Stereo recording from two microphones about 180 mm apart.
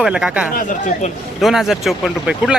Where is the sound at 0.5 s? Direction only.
45° left (ahead or behind).